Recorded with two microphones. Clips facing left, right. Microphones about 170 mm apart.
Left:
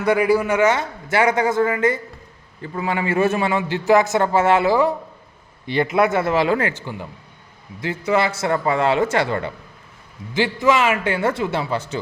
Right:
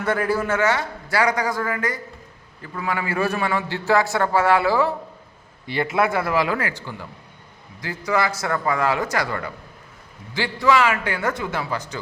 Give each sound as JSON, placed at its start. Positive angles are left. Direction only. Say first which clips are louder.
{"t": 0.0, "sound": "a man's voice", "louder": "left 5 dB", "side_deg": 10}